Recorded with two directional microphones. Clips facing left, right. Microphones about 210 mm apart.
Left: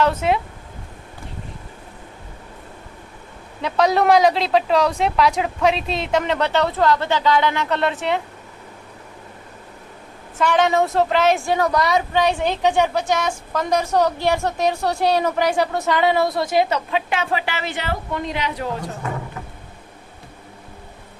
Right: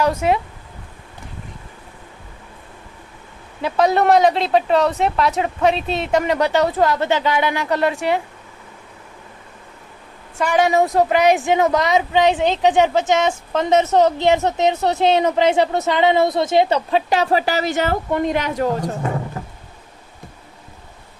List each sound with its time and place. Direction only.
0.0 s a woman's voice: 10° right (ahead or behind)
3.6 s speech: centre (ahead or behind)
10.3 s a woman's voice: 10° right (ahead or behind); by 18.9 s 45° right (ahead or behind)